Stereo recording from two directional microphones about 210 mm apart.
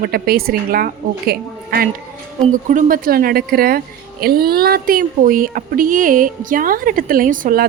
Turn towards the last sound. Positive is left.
turn(degrees=-40)  # may be behind; listen again after turning